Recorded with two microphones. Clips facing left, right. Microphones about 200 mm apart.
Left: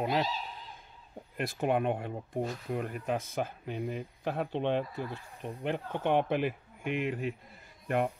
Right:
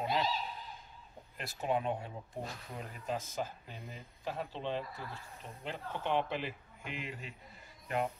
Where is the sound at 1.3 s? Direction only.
55° left (ahead or behind).